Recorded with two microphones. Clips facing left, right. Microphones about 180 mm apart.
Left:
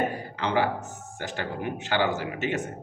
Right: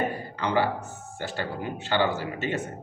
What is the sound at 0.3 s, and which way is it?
Speech, 15° left (ahead or behind).